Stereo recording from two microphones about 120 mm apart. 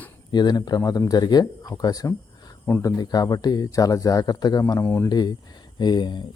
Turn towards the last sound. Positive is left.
turn(degrees=40)  # may be behind; listen again after turning